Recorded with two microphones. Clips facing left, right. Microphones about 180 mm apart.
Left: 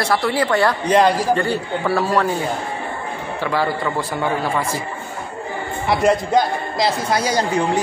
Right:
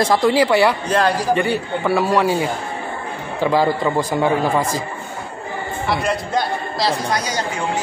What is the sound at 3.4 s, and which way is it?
A man's voice, 20° right (ahead or behind).